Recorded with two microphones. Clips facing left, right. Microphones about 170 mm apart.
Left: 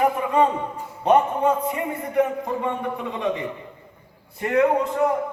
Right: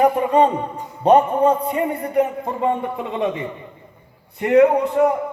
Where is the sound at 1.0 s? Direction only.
35° right (ahead or behind).